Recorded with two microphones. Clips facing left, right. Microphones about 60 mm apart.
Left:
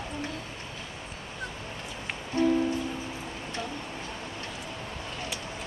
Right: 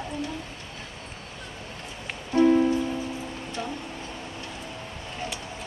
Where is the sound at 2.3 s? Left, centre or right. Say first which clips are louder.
Right 6 dB; right.